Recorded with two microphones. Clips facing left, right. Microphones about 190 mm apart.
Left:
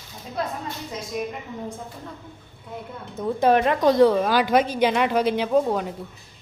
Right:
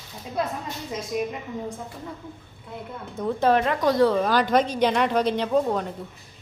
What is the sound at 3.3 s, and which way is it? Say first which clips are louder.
Speech: left 3 dB; 15° left (ahead or behind).